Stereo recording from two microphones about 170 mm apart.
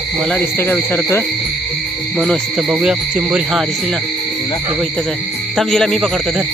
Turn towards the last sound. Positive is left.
turn(degrees=0)  # may be behind; listen again after turning